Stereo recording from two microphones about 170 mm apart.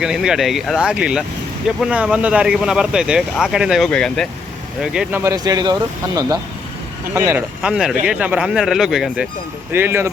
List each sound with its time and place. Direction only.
0.0 s speech: 5° right (ahead or behind)
5.2 s speech: 20° right (ahead or behind)